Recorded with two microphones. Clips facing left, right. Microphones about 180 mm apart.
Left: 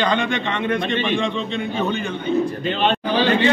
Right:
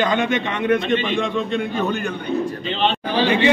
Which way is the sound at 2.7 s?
50° left (ahead or behind).